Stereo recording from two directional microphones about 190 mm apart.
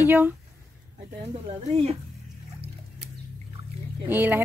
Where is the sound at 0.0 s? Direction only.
10° right (ahead or behind).